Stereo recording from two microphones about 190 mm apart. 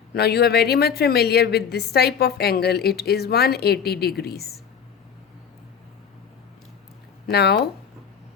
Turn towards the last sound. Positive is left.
turn(degrees=60)  # may be behind; listen again after turning